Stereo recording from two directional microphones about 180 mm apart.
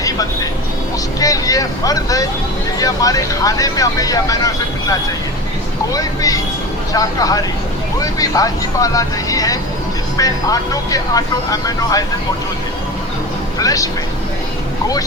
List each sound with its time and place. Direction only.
0.0 s vehicle: 20° left (ahead or behind)
1.2 s speech: 20° left (ahead or behind)
13.6 s speech: 20° left (ahead or behind)